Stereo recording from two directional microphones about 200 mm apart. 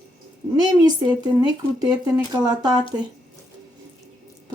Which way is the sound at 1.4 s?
20° right (ahead or behind).